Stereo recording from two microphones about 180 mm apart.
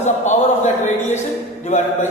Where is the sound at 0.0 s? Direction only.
40° left (ahead or behind).